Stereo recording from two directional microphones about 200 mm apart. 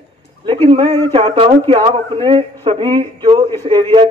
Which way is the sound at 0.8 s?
10° left (ahead or behind).